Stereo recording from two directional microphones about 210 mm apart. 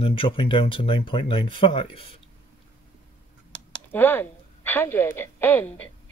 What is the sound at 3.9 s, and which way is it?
A woman's voice, 10° left (ahead or behind).